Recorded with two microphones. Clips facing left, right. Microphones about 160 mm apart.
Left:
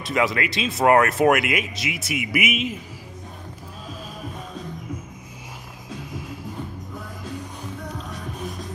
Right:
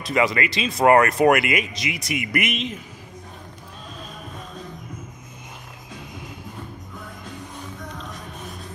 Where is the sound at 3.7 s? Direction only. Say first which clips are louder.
Left 2 dB; 5° left (ahead or behind).